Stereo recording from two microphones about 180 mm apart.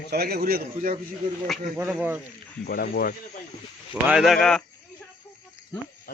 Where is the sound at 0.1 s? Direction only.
60° right (ahead or behind).